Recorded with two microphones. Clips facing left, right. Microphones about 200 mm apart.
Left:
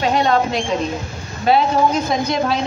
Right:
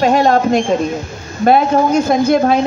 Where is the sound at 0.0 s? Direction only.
50° right (ahead or behind).